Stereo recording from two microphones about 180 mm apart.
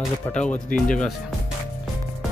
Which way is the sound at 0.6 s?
45° left (ahead or behind).